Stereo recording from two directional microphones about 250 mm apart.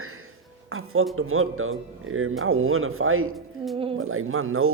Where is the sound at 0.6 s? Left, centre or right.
Right.